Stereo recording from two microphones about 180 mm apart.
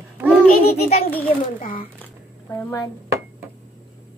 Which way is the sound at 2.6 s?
15° left (ahead or behind).